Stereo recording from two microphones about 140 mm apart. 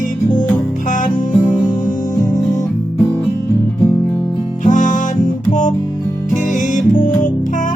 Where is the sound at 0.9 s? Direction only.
70° left (ahead or behind).